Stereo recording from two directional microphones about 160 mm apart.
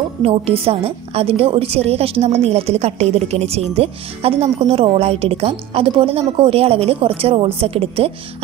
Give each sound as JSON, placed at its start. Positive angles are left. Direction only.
{"t": 0.2, "sound": "a woman's voice", "side_deg": -35}